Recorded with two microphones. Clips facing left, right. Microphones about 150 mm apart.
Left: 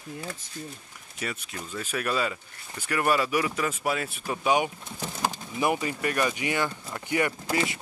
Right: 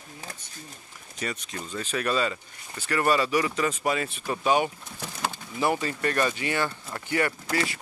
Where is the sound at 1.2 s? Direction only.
5° left (ahead or behind).